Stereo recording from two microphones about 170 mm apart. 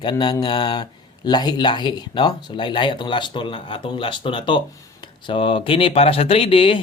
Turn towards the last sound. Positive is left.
turn(degrees=30)  # may be behind; listen again after turning